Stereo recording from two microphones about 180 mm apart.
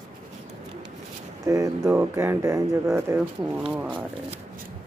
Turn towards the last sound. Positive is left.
turn(degrees=-5)  # may be behind; listen again after turning